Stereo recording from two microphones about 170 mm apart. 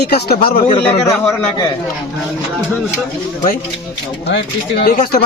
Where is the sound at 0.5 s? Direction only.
35° left (ahead or behind).